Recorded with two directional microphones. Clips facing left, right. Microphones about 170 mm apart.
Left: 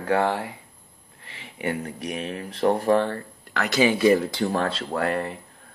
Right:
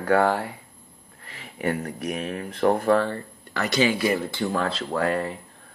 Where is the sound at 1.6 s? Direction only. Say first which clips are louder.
Right 2 dB; 40° right (ahead or behind).